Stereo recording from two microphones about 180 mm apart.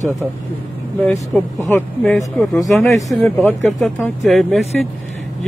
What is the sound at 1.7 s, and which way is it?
Speech, 10° left (ahead or behind).